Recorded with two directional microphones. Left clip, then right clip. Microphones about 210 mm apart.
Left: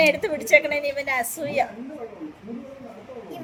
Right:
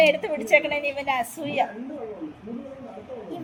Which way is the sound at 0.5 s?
70° left (ahead or behind).